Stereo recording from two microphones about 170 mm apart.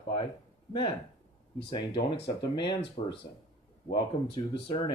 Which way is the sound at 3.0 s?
40° left (ahead or behind).